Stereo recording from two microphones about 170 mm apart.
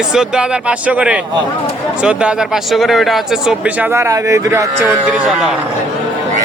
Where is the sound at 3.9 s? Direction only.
15° right (ahead or behind).